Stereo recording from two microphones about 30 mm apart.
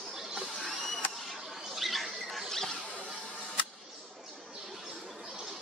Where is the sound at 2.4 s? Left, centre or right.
Centre.